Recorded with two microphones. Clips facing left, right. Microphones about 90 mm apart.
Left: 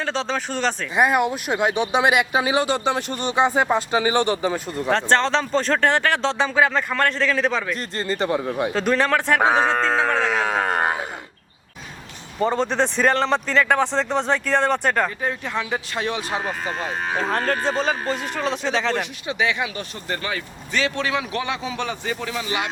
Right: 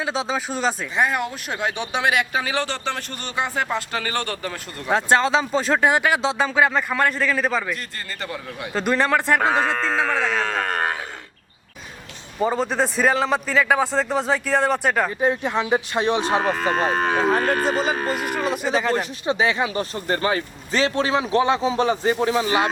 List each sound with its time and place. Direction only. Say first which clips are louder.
0.0 s speech: even; 10° right (ahead or behind)
0.9 s speech: left 8 dB; 15° left (ahead or behind)
4.9 s speech: right 1 dB; 10° right (ahead or behind)
7.9 s a man's voice: left 9 dB; 20° left (ahead or behind)
8.7 s a man's voice: right 2 dB; 5° right (ahead or behind)
10.3 s speech: left 2 dB; 15° left (ahead or behind)
12.4 s a man's voice: left 1 dB; 5° right (ahead or behind)
15.2 s speech: right 5 dB; 20° right (ahead or behind)
16.6 s speech: right 6 dB; 65° right (ahead or behind)
17.2 s a man's voice: right 3 dB; 5° right (ahead or behind)
19.2 s speech: right 4 dB; 35° right (ahead or behind)